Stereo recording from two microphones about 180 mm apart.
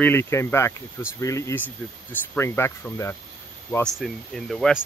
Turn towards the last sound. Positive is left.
turn(degrees=0)  # may be behind; listen again after turning